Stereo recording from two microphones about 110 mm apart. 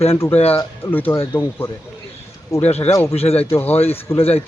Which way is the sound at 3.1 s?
65° left (ahead or behind).